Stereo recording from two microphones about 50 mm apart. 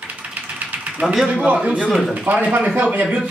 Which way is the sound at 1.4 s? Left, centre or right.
Right.